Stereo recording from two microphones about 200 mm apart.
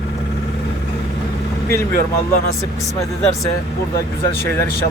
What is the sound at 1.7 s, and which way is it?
Speech, 15° left (ahead or behind).